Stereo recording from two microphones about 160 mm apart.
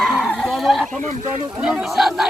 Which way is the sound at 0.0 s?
Centre (ahead or behind).